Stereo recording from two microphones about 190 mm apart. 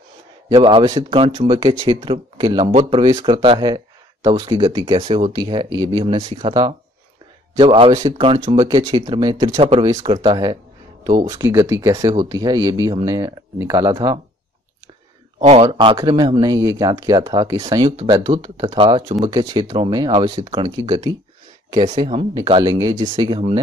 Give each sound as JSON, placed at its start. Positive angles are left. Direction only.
{"t": 0.6, "sound": "speech", "side_deg": -30}
{"t": 15.3, "sound": "speech", "side_deg": -35}